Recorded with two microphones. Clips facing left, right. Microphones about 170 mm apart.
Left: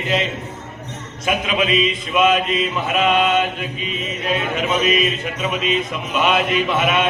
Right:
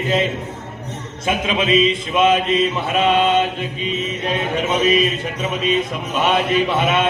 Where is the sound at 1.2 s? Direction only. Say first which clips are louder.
Right 1 dB; 30° right (ahead or behind).